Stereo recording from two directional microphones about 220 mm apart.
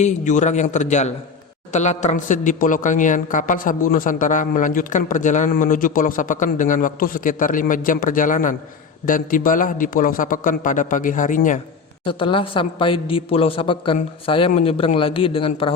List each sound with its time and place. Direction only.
0.0 s a man's voice: 35° left (ahead or behind)
12.0 s a woman's voice: 25° left (ahead or behind)